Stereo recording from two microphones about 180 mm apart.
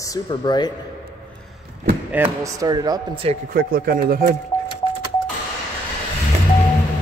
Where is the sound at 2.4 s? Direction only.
20° right (ahead or behind).